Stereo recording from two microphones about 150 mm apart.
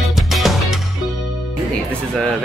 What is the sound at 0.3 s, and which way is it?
Music, centre (ahead or behind).